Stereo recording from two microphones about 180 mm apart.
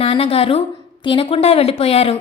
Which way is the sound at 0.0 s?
30° left (ahead or behind).